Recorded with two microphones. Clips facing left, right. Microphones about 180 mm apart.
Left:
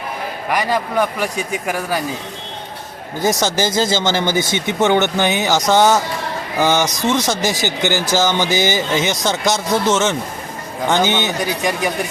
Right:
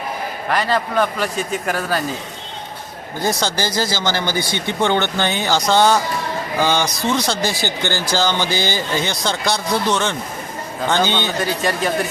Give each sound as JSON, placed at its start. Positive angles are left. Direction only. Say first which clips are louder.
{"t": 0.4, "sound": "speech", "louder": "even", "side_deg": 15}
{"t": 3.2, "sound": "speech", "louder": "left 4 dB", "side_deg": 20}